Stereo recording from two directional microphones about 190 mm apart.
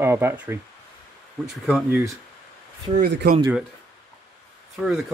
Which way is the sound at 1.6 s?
Centre (ahead or behind).